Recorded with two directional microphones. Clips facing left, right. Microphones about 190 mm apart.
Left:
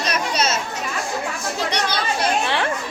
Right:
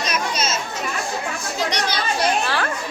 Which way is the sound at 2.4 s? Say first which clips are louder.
Left 1 dB; 25° left (ahead or behind).